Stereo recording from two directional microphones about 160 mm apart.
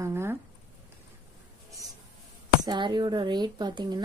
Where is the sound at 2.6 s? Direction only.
30° right (ahead or behind).